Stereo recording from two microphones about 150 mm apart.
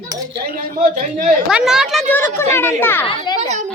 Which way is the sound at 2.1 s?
15° left (ahead or behind).